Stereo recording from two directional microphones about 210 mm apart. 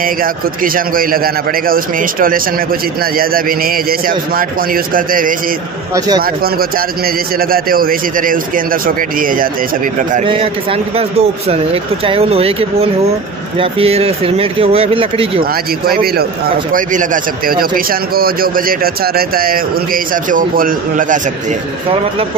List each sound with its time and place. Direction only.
0.0 s a man's voice: 40° right (ahead or behind)
5.9 s a man's voice: 20° right (ahead or behind)
6.2 s a man's voice: 45° right (ahead or behind)
10.2 s a man's voice: 25° right (ahead or behind)
15.5 s a man's voice: 45° right (ahead or behind)